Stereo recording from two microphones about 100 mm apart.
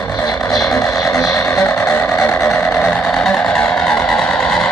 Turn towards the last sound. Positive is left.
turn(degrees=10)  # may be behind; listen again after turning